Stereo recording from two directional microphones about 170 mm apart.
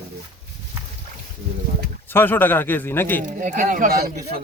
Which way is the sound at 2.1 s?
10° left (ahead or behind).